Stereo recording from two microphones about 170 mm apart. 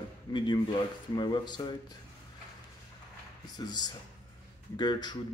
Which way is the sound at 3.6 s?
25° left (ahead or behind).